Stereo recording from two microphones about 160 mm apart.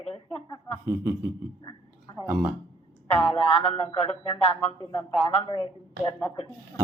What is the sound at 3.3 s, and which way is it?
Music, 40° left (ahead or behind).